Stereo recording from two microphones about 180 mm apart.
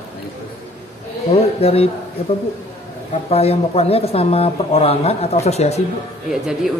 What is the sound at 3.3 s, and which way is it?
Speech, 35° left (ahead or behind).